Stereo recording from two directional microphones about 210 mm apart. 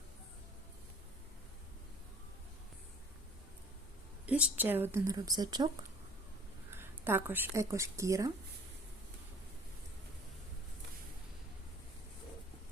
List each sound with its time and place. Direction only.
4.3 s a woman's voice: 5° right (ahead or behind)
6.7 s speech: 10° right (ahead or behind)